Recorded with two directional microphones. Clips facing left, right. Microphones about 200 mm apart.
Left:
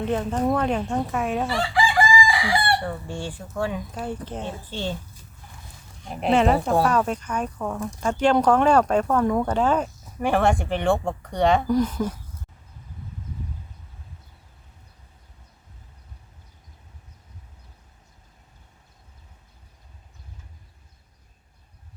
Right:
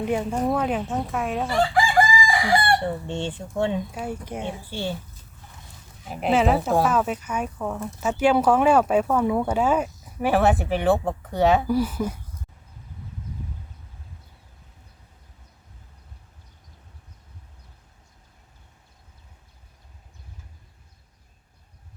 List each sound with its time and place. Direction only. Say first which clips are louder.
0.0 s speech: even; 10° right (ahead or behind)
1.7 s chicken: left 3 dB; 45° right (ahead or behind)
2.8 s fowl: right 3 dB; 25° right (ahead or behind)
3.9 s speech: even; 10° right (ahead or behind)
6.1 s speech: left 1 dB; 5° right (ahead or behind)